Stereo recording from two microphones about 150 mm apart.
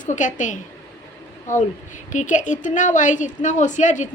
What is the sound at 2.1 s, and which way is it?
A woman's voice, 55° left (ahead or behind).